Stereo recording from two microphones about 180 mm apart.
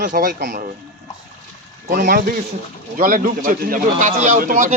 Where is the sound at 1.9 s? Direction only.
50° right (ahead or behind).